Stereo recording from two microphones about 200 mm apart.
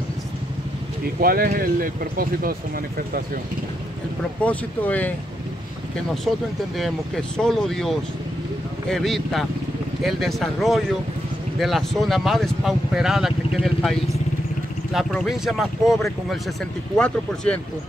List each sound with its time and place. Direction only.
1.2 s speech: 50° right (ahead or behind)
4.4 s speech: 5° left (ahead or behind)
6.8 s speech: 5° left (ahead or behind)